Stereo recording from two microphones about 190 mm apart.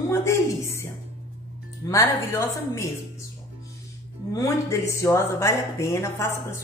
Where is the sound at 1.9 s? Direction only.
15° left (ahead or behind).